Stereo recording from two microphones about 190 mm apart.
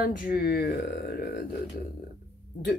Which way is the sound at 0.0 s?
50° left (ahead or behind).